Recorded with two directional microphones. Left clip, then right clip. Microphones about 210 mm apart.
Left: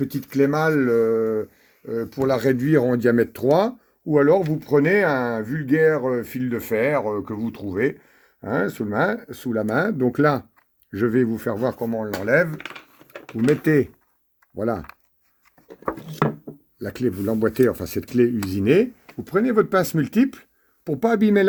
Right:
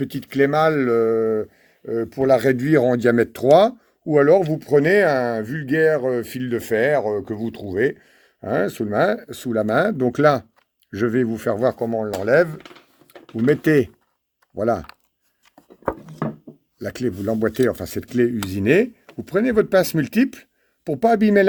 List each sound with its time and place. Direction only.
0.0 s speech: 30° right (ahead or behind)
11.9 s speech: 50° right (ahead or behind)
13.5 s speech: 30° right (ahead or behind)
16.8 s speech: 25° right (ahead or behind)